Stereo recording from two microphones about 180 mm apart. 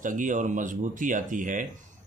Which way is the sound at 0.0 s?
45° right (ahead or behind).